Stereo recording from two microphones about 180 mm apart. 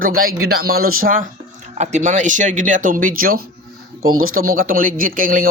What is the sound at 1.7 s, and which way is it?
Speech, 40° right (ahead or behind).